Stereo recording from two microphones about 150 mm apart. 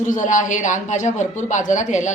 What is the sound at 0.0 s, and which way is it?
A woman's voice, 55° left (ahead or behind).